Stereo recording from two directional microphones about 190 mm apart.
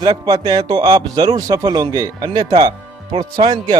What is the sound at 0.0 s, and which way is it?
A man's voice, 20° right (ahead or behind).